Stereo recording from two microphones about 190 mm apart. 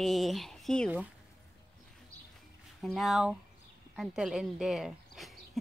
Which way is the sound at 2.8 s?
Centre (ahead or behind).